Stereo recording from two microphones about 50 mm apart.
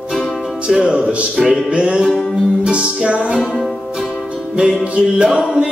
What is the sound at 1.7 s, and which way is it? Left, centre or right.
Music, right.